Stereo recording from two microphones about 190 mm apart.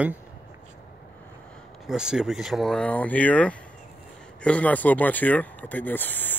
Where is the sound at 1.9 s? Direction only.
5° right (ahead or behind).